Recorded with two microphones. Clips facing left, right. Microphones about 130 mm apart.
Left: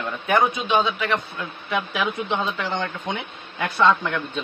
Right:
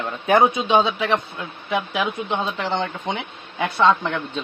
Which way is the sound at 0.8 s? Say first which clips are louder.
Right 2 dB; 20° right (ahead or behind).